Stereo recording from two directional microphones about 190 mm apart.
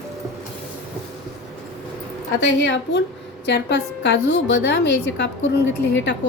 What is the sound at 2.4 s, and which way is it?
A woman's voice, 75° left (ahead or behind).